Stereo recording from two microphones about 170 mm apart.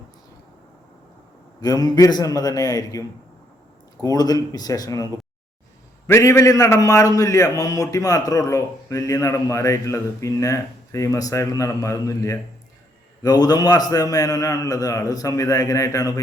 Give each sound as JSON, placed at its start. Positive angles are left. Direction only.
{"t": 1.6, "sound": "a man's voice", "side_deg": 20}
{"t": 4.0, "sound": "a man's voice", "side_deg": 20}
{"t": 6.1, "sound": "a man's voice", "side_deg": 15}